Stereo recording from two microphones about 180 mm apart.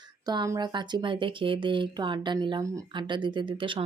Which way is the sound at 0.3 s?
20° right (ahead or behind).